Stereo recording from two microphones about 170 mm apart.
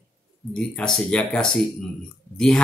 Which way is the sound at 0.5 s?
5° left (ahead or behind).